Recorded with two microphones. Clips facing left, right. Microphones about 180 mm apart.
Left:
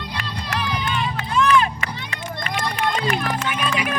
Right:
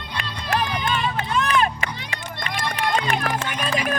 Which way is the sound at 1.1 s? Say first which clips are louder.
Left 4 dB; 45° right (ahead or behind).